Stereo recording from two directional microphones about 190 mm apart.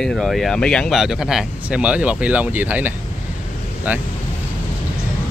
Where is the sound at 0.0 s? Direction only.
Centre (ahead or behind).